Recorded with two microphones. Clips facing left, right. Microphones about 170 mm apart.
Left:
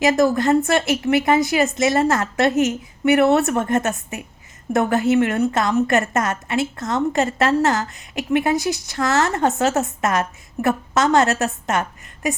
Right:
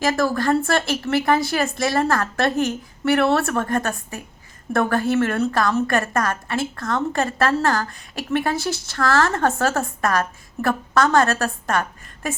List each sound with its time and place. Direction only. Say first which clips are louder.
0.0 s a woman's voice: left 4 dB; 20° left (ahead or behind)